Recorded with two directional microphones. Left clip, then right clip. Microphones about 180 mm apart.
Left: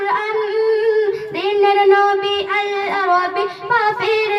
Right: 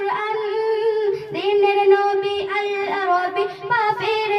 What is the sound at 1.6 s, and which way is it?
Child singing, 30° left (ahead or behind).